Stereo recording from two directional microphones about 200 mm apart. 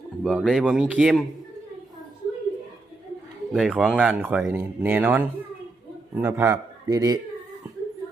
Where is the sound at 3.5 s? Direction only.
Centre (ahead or behind); by 7.2 s 20° right (ahead or behind).